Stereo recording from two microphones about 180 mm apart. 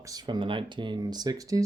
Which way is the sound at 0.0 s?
20° right (ahead or behind).